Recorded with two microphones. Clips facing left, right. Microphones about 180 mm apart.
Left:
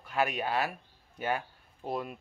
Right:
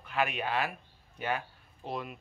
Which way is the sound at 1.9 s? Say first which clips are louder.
Left 3 dB; 40° left (ahead or behind).